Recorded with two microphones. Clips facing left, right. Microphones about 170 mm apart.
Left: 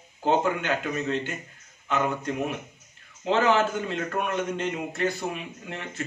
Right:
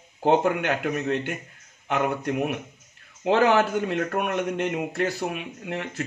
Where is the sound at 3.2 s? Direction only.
65° right (ahead or behind).